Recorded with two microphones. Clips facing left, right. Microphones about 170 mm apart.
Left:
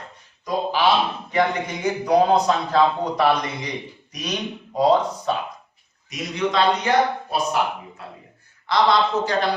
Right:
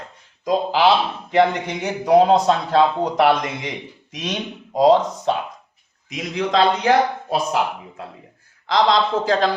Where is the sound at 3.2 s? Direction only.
90° right.